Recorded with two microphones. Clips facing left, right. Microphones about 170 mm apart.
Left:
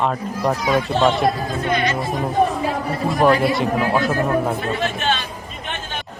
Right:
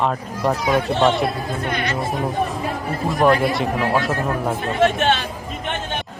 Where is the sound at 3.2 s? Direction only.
Centre (ahead or behind).